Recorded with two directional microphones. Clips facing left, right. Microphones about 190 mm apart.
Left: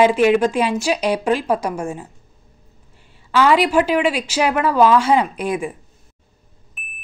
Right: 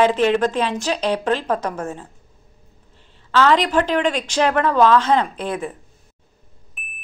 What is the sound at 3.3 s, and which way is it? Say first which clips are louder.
A woman's voice: left 2 dB; 10° left (ahead or behind).